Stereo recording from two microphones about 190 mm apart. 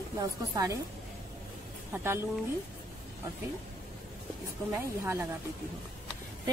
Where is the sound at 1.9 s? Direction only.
10° right (ahead or behind).